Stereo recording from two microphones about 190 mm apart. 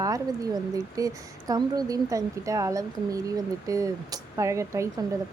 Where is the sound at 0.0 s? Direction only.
20° right (ahead or behind).